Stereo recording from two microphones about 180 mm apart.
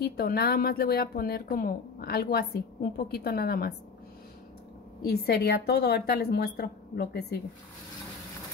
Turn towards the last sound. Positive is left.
turn(degrees=65)  # may be behind; listen again after turning